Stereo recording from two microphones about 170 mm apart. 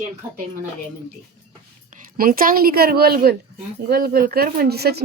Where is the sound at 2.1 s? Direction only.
55° right (ahead or behind).